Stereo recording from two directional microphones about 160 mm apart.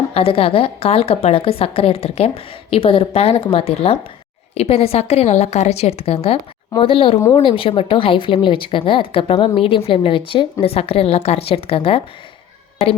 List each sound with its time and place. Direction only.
0.1 s a woman's voice: 35° left (ahead or behind)